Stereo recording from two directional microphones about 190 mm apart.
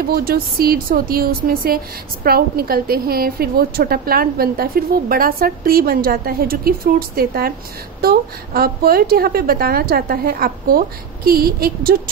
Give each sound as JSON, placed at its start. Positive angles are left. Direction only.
{"t": 0.0, "sound": "a woman's voice", "side_deg": -50}